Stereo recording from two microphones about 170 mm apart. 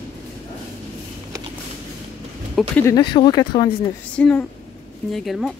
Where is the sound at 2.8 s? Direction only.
25° left (ahead or behind).